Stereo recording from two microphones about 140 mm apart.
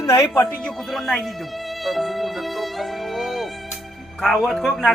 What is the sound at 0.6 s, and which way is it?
Speech, centre (ahead or behind).